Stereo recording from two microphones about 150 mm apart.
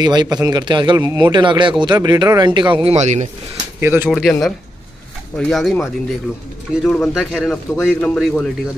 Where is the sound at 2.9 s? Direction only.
50° right (ahead or behind).